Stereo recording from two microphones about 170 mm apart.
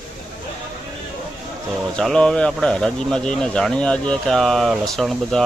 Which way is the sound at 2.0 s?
5° left (ahead or behind).